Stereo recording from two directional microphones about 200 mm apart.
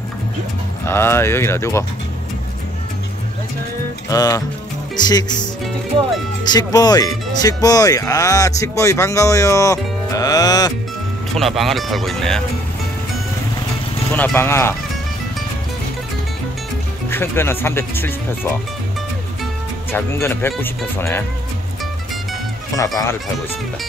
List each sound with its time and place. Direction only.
0.8 s speech: 10° left (ahead or behind)
4.1 s speech: 20° left (ahead or behind)
6.5 s speech: 20° left (ahead or behind)
11.3 s speech: centre (ahead or behind)
14.1 s speech: 10° left (ahead or behind)
17.1 s speech: 10° left (ahead or behind)
19.9 s speech: 10° left (ahead or behind)
22.7 s speech: 15° left (ahead or behind)